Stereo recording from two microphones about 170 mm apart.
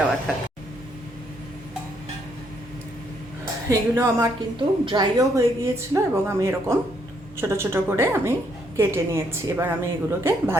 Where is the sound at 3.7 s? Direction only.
15° right (ahead or behind).